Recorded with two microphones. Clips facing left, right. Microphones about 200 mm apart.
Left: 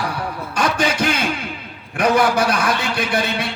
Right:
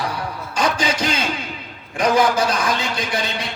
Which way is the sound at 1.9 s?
65° left (ahead or behind).